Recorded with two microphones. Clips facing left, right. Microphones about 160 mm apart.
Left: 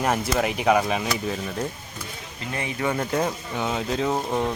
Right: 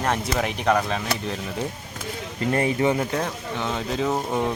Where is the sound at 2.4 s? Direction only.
50° right (ahead or behind).